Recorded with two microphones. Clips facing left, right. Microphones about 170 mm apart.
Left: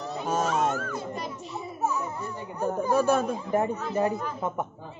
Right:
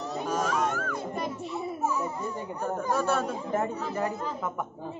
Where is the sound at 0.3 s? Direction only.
25° left (ahead or behind).